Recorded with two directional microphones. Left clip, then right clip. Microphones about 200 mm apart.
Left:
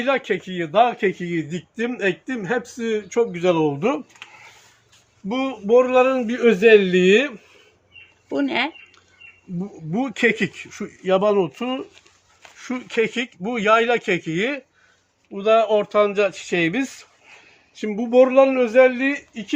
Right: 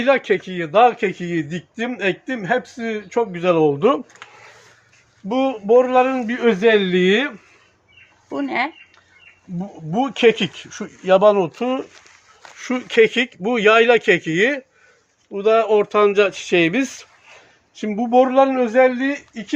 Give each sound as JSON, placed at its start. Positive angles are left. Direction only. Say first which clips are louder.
{"t": 0.0, "sound": "a man's voice", "louder": "right 5 dB", "side_deg": -50}
{"t": 5.3, "sound": "a man's voice", "louder": "right 3 dB", "side_deg": -45}
{"t": 9.9, "sound": "a man's voice", "louder": "right 5 dB", "side_deg": -40}
{"t": 17.7, "sound": "a man's voice", "louder": "even", "side_deg": -35}